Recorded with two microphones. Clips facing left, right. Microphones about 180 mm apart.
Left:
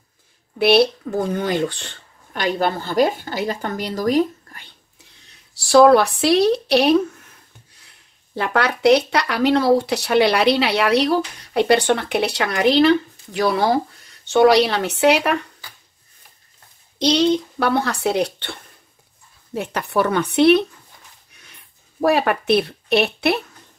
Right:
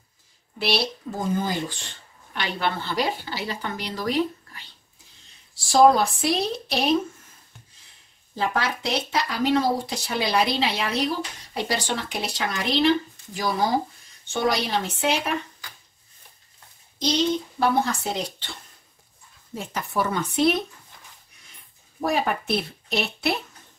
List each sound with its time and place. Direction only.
0.6 s speech: 60° left (ahead or behind)
2.3 s a woman's voice: 45° left (ahead or behind)
5.3 s a sound: 70° left (ahead or behind)
8.4 s speech: 70° left (ahead or behind)
17.0 s speech: 70° left (ahead or behind)
22.0 s speech: 70° left (ahead or behind)